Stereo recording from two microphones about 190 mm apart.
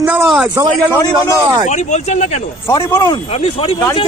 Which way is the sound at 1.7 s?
40° left (ahead or behind).